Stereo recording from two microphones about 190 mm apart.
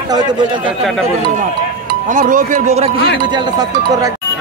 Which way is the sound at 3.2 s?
20° right (ahead or behind).